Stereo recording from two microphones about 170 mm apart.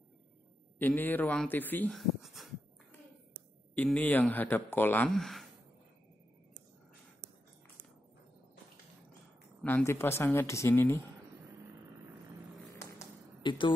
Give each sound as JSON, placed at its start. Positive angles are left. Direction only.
{"t": 0.7, "sound": "speech", "side_deg": 10}
{"t": 2.0, "sound": "a sound", "side_deg": 0}
{"t": 3.7, "sound": "speech", "side_deg": 10}
{"t": 9.6, "sound": "a sound", "side_deg": 5}
{"t": 9.8, "sound": "speech", "side_deg": 15}
{"t": 12.7, "sound": "typewriter", "side_deg": 20}